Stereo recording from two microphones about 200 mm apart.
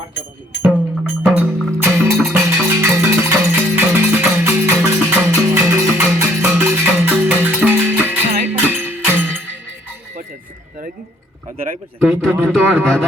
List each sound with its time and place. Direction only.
1.2 s music: centre (ahead or behind)
1.7 s music: 15° right (ahead or behind)
8.3 s music: 35° right (ahead or behind)
8.7 s music: 10° right (ahead or behind)
11.9 s a man's voice: centre (ahead or behind)
12.3 s speech: 10° right (ahead or behind)